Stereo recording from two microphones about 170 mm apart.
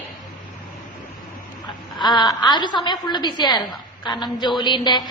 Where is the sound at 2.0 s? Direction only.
25° left (ahead or behind).